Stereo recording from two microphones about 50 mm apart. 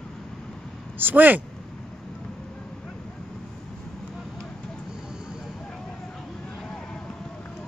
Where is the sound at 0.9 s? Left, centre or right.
Right.